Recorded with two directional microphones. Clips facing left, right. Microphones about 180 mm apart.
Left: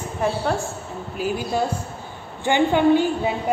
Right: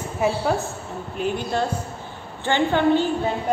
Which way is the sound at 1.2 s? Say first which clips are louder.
Left 1 dB; 5° left (ahead or behind).